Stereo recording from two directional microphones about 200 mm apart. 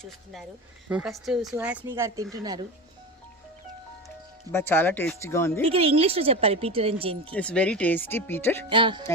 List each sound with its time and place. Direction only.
0.9 s speech: 5° right (ahead or behind); by 2.6 s 20° right (ahead or behind)
4.5 s speech: 10° left (ahead or behind)
5.6 s speech: 30° right (ahead or behind)
7.3 s speech: 5° left (ahead or behind)
8.7 s speech: 25° right (ahead or behind)